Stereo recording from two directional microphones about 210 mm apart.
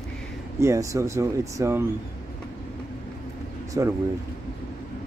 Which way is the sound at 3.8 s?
15° right (ahead or behind).